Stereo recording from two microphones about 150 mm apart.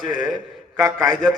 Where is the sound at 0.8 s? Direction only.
25° right (ahead or behind).